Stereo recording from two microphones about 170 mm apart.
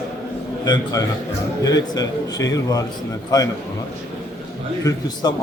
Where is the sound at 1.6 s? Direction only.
20° left (ahead or behind).